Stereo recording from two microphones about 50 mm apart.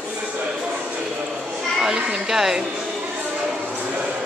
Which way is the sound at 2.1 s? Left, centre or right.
Centre.